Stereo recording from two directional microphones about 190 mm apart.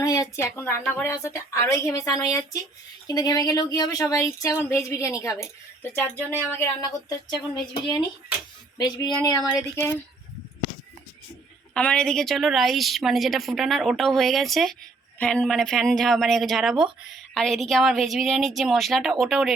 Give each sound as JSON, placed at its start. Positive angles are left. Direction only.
{"t": 0.0, "sound": "a woman's voice", "side_deg": 20}
{"t": 6.8, "sound": "speech", "side_deg": 20}
{"t": 8.8, "sound": "speech", "side_deg": 20}
{"t": 11.7, "sound": "a woman's voice", "side_deg": 5}